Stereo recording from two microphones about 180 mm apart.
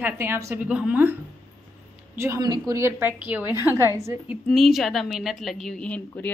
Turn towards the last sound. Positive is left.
turn(degrees=10)  # may be behind; listen again after turning